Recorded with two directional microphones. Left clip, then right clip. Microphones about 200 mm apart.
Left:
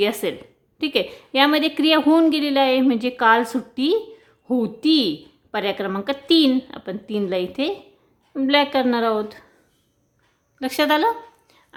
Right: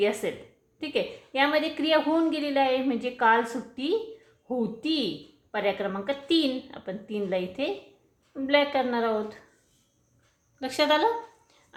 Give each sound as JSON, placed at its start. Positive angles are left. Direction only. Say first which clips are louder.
{"t": 0.0, "sound": "a woman's voice", "louder": "left 5 dB", "side_deg": 40}
{"t": 10.6, "sound": "speech", "louder": "left 4 dB", "side_deg": 35}